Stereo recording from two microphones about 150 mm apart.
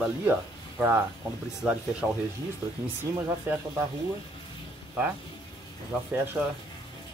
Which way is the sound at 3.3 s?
20° right (ahead or behind).